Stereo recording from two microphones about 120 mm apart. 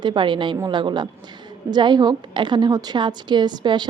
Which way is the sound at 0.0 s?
40° right (ahead or behind).